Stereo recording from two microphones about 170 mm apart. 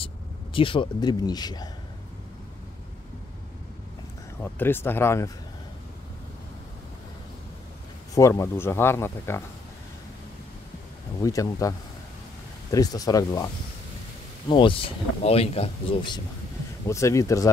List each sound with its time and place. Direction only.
0.0 s speech: 30° left (ahead or behind)
4.4 s speech: 10° left (ahead or behind)
8.1 s speech: 15° left (ahead or behind)
11.2 s speech: 20° left (ahead or behind)
12.7 s speech: 20° left (ahead or behind)
14.5 s a man's voice: 30° left (ahead or behind)
16.8 s speech: 20° left (ahead or behind)